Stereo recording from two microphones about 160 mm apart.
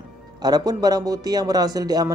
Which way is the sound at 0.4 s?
25° right (ahead or behind).